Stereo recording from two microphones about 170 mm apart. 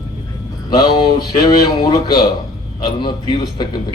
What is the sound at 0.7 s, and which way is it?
A man's voice, 25° left (ahead or behind).